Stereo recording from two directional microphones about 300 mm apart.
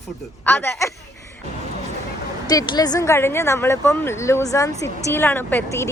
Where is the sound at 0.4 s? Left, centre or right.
Centre.